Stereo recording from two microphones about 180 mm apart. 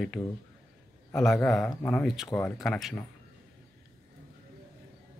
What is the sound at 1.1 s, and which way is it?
Speech, centre (ahead or behind).